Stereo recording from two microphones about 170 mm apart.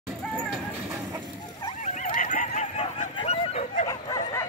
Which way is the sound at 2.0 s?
50° left (ahead or behind).